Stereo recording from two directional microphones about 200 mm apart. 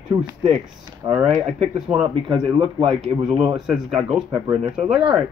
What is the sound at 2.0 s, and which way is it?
Speech, 20° right (ahead or behind).